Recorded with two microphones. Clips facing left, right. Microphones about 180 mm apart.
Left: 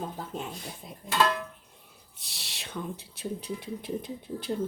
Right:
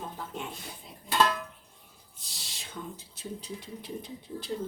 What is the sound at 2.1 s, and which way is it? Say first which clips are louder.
Speech: left 2 dB; 70° left (ahead or behind).